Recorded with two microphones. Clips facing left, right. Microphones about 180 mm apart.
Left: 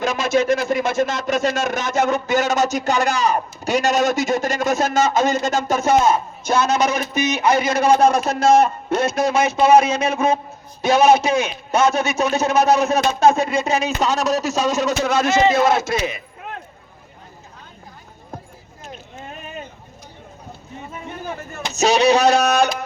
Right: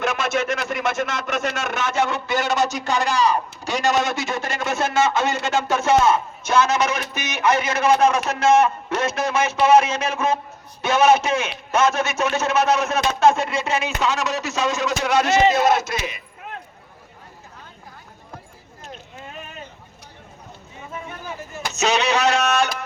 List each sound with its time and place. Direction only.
0.0 s speech: 35° left (ahead or behind); by 16.2 s 50° left (ahead or behind)
21.8 s speech: 35° left (ahead or behind)